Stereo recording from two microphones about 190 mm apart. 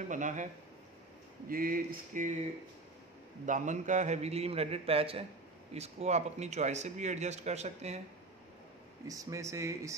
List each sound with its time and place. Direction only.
0.1 s speech: 40° right (ahead or behind)
1.5 s a sound: 50° right (ahead or behind)
3.4 s speech: 40° right (ahead or behind)
9.0 s speech: 15° right (ahead or behind)